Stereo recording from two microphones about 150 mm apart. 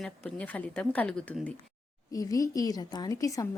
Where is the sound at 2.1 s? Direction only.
25° left (ahead or behind).